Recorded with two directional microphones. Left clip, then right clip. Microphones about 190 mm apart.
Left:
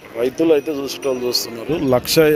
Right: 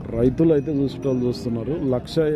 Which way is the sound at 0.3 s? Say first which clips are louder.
Left 5 dB; 5° right (ahead or behind).